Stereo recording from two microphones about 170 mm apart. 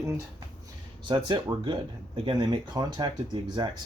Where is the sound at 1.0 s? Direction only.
30° right (ahead or behind).